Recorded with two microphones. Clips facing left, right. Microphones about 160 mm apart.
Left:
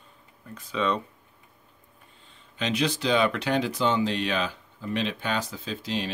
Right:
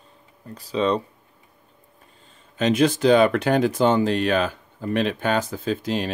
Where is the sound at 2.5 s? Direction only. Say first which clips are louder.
Right 8 dB; 50° right (ahead or behind).